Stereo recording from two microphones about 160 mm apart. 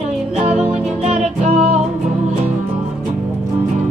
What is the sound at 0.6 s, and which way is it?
Music, 40° right (ahead or behind).